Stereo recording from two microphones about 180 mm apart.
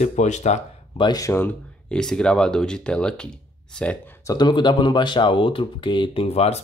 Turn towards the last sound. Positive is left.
turn(degrees=35)  # may be behind; listen again after turning